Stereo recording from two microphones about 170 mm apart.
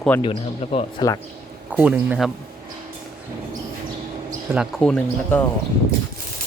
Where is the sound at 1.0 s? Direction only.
25° left (ahead or behind).